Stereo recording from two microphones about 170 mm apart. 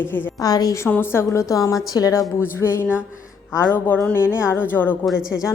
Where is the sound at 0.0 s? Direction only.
10° left (ahead or behind).